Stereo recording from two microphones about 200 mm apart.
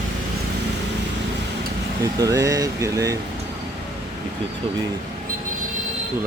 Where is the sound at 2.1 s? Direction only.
15° right (ahead or behind).